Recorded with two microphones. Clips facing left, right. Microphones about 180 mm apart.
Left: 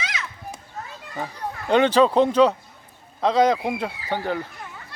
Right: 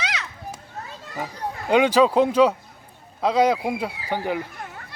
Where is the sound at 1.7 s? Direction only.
10° right (ahead or behind).